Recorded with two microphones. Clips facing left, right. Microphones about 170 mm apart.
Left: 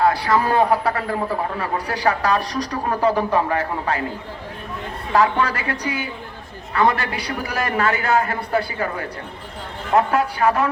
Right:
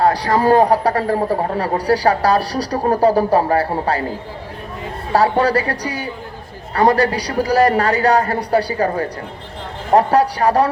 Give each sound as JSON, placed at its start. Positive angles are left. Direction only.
{"t": 0.0, "sound": "a man's voice", "side_deg": -40}
{"t": 5.1, "sound": "a man's voice", "side_deg": -35}